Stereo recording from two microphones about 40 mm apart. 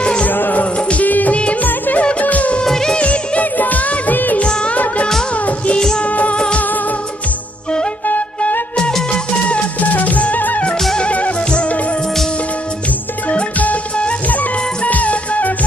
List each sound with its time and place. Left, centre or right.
0.3 s music: left
0.7 s music: left
1.0 s music of bollywood: left
1.6 s music: left
2.6 s music of bollywood: centre
3.0 s music of bollywood: left
4.4 s music of bollywood: left
5.8 s music: centre
6.0 s music of bollywood: left
9.5 s music: left
13.3 s music: left